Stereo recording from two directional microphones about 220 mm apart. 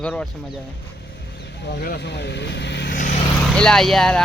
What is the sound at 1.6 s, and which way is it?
Speech, 45° left (ahead or behind).